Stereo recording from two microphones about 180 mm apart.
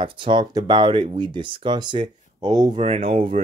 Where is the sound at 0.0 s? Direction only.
25° right (ahead or behind).